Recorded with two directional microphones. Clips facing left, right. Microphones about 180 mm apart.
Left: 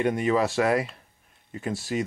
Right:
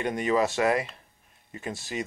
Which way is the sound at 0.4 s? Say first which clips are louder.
Left 1 dB; 20° right (ahead or behind).